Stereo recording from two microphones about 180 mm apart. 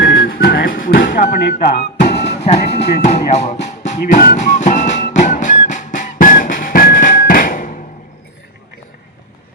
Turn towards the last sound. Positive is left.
turn(degrees=45)  # may be behind; listen again after turning